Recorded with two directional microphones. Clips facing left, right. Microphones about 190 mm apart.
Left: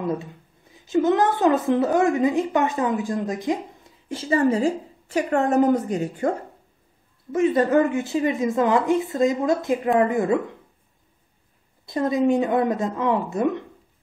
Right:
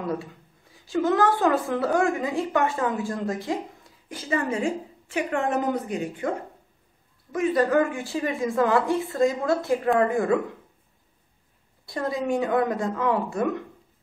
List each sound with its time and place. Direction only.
0.7 s a woman's voice: 20° left (ahead or behind)
4.1 s a woman's voice: 30° left (ahead or behind)
7.3 s a woman's voice: 25° left (ahead or behind)
11.8 s a woman's voice: 20° left (ahead or behind)